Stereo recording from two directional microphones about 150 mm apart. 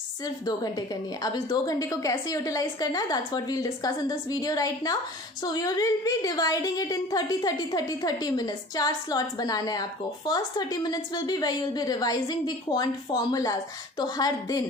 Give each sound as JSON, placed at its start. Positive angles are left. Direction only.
{"t": 1.2, "sound": "a woman's voice", "side_deg": 25}